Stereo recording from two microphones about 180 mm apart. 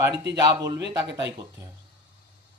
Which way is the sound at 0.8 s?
70° right (ahead or behind).